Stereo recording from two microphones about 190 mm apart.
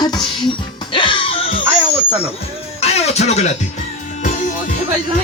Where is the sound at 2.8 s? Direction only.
35° left (ahead or behind).